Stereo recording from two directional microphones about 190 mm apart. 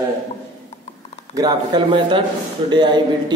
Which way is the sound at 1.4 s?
20° right (ahead or behind).